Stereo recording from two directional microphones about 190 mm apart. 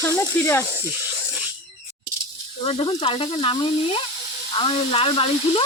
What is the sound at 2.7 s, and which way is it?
Speech, 30° left (ahead or behind).